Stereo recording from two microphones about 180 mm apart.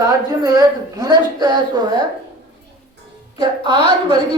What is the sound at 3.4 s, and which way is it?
Speech, 25° right (ahead or behind).